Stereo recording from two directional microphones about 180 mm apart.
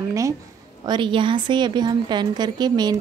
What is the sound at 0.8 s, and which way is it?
A woman's voice, 25° right (ahead or behind).